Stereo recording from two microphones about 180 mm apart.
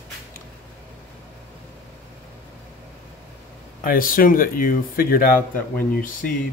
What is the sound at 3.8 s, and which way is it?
Speech, 50° left (ahead or behind).